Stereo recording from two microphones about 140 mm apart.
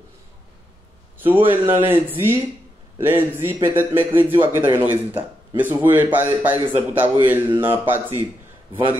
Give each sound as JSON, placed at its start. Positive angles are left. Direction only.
{"t": 1.2, "sound": "a man's voice", "side_deg": -15}